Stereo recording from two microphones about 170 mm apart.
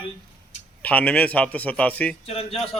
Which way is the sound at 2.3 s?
35° left (ahead or behind).